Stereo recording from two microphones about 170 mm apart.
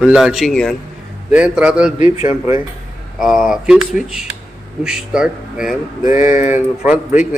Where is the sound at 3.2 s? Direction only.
Centre (ahead or behind).